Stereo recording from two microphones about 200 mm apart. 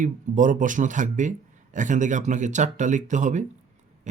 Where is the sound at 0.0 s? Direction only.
40° right (ahead or behind).